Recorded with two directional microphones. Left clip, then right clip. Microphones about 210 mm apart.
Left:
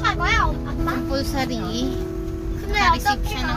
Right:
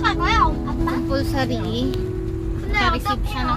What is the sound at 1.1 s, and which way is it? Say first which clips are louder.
Speech: right 2 dB; 10° right (ahead or behind).